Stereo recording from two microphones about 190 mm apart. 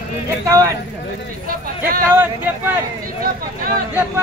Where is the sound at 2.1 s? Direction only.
10° right (ahead or behind).